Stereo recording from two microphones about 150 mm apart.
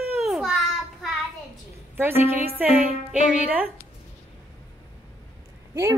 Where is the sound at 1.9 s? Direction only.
15° right (ahead or behind).